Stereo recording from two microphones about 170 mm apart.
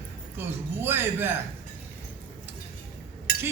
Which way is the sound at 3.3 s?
65° left (ahead or behind).